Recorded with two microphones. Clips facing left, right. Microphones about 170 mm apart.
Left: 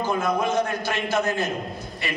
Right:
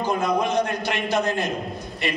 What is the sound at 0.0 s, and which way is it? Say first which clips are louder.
Speech: right 1 dB; 15° right (ahead or behind).